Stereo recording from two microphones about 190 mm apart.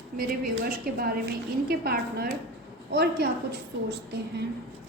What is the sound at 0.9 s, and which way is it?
A woman's voice, 55° right (ahead or behind).